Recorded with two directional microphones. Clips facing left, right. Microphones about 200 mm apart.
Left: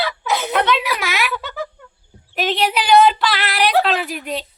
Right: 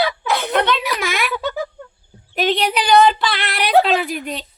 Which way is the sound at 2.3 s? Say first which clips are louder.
Right 1 dB; centre (ahead or behind).